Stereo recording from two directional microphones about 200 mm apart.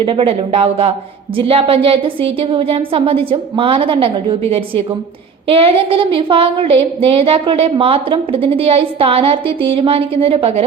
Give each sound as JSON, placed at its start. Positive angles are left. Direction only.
{"t": 0.0, "sound": "a woman's voice", "side_deg": -25}